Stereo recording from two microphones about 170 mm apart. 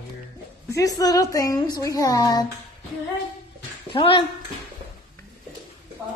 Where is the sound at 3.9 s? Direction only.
30° left (ahead or behind).